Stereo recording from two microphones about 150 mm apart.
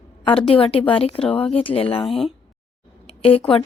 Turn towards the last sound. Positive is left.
turn(degrees=35)  # may be behind; listen again after turning